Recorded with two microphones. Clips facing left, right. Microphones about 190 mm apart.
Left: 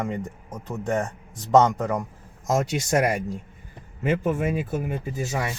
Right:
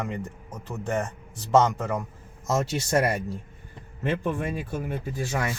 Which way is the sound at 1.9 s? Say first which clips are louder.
Left 2 dB; 15° left (ahead or behind).